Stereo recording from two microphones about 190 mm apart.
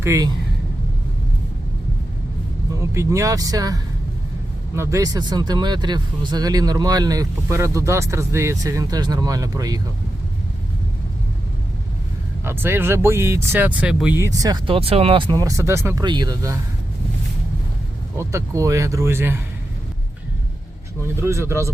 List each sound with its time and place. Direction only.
0.0 s speech: 15° right (ahead or behind)
2.7 s speech: 15° right (ahead or behind)
12.5 s speech: 10° right (ahead or behind)
18.2 s speech: 15° right (ahead or behind)
21.2 s speech: 15° right (ahead or behind)